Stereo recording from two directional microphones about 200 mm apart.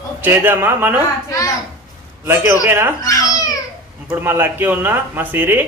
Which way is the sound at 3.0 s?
15° left (ahead or behind).